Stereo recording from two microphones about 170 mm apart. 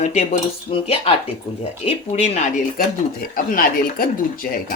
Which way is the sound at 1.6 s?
40° left (ahead or behind).